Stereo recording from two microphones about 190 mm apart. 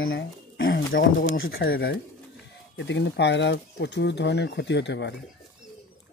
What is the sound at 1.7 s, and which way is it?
Speech, 60° left (ahead or behind).